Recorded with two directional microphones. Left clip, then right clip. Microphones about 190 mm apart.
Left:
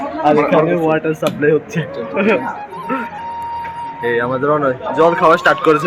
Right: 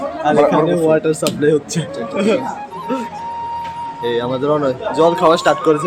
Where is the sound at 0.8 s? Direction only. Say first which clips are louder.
Right 1 dB; 5° right (ahead or behind).